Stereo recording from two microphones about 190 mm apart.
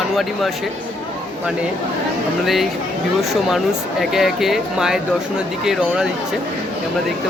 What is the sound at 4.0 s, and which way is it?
Speech, centre (ahead or behind).